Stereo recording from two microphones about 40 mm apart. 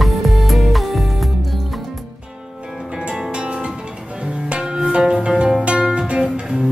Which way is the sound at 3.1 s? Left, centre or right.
Right.